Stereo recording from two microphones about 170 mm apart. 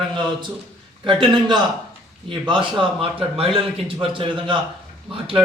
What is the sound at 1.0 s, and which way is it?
A man's voice, 30° right (ahead or behind).